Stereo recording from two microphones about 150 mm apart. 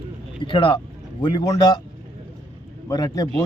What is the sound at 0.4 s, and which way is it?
A man's voice, 35° left (ahead or behind).